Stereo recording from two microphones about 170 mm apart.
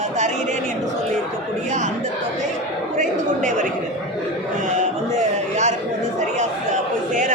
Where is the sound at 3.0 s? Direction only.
50° right (ahead or behind).